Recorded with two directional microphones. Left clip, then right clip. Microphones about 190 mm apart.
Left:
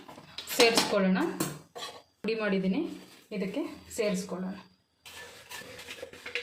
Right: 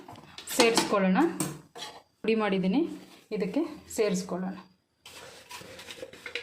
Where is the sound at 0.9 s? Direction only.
45° right (ahead or behind).